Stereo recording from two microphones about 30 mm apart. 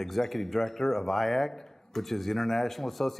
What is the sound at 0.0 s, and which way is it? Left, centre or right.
A man's voice, centre.